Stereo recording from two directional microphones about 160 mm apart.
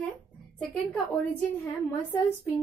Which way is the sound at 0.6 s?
Centre (ahead or behind).